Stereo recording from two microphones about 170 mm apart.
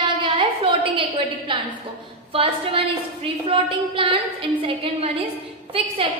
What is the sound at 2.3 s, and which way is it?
A woman's voice, 30° right (ahead or behind).